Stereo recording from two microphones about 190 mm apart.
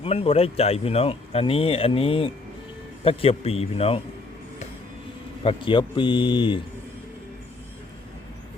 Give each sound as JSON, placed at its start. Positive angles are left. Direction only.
{"t": 0.0, "sound": "speech", "side_deg": 30}
{"t": 5.4, "sound": "speech", "side_deg": 25}